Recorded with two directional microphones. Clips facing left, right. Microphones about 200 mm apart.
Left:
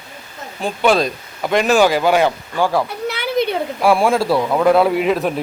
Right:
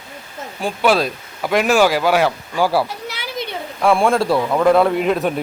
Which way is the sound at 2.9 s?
60° left (ahead or behind).